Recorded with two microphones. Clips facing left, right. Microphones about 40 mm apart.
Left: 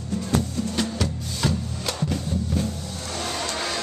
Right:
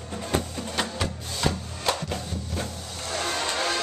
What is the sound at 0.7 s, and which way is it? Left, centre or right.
Music, centre.